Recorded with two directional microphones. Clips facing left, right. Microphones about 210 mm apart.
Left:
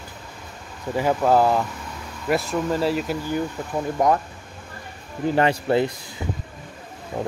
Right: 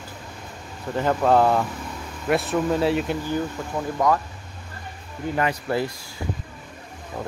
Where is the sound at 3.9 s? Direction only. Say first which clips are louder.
Left 1 dB; 25° left (ahead or behind).